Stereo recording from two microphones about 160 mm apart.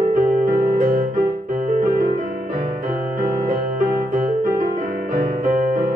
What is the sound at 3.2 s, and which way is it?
Music, 55° right (ahead or behind).